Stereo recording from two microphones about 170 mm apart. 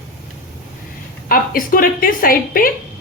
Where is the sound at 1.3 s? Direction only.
55° left (ahead or behind).